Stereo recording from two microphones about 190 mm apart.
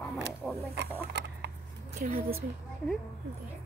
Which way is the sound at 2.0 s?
50° right (ahead or behind).